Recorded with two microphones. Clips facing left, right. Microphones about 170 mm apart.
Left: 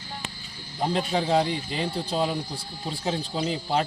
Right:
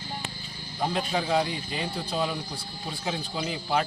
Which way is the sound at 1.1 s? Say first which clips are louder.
Left 4 dB; 30° left (ahead or behind).